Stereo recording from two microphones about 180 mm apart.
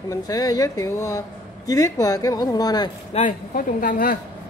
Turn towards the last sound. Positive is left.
turn(degrees=50)  # may be behind; listen again after turning